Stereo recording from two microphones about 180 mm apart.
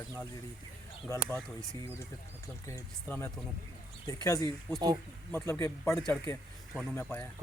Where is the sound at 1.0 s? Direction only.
10° left (ahead or behind).